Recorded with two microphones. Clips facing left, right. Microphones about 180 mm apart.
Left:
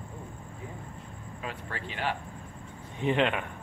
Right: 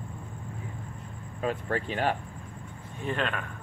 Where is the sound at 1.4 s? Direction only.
45° right (ahead or behind).